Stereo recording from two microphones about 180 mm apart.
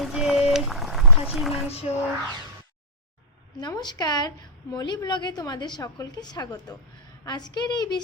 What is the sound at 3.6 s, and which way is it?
A woman's voice, 25° left (ahead or behind).